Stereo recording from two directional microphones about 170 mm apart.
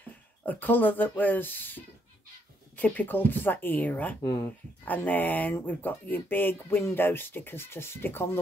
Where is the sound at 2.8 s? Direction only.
10° left (ahead or behind).